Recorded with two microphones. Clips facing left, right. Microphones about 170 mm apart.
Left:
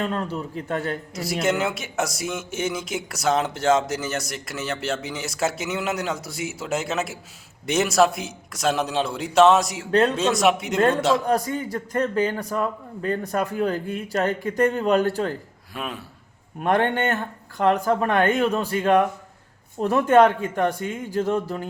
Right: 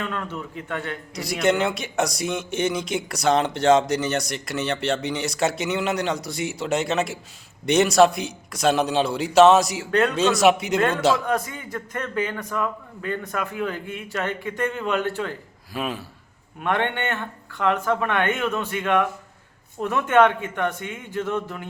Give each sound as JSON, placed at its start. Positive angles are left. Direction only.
{"t": 0.0, "sound": "a man's voice", "side_deg": 35}
{"t": 1.1, "sound": "a man's voice", "side_deg": 5}
{"t": 9.9, "sound": "speech", "side_deg": 30}
{"t": 10.2, "sound": "a man's voice", "side_deg": 0}
{"t": 11.3, "sound": "a man's voice", "side_deg": 35}
{"t": 15.7, "sound": "a man's voice", "side_deg": 0}
{"t": 16.6, "sound": "a man's voice", "side_deg": 40}